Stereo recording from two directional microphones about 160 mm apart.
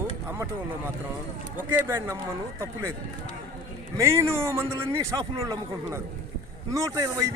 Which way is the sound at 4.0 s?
15° right (ahead or behind).